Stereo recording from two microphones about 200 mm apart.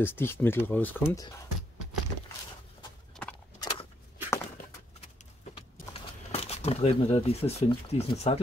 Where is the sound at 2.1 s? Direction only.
20° left (ahead or behind).